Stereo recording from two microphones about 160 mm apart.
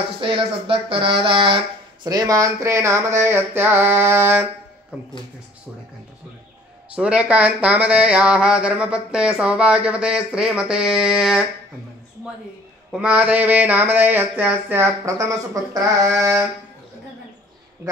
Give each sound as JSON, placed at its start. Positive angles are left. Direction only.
{"t": 0.2, "sound": "speech", "side_deg": -35}
{"t": 7.0, "sound": "speech", "side_deg": -5}
{"t": 12.9, "sound": "speech", "side_deg": -10}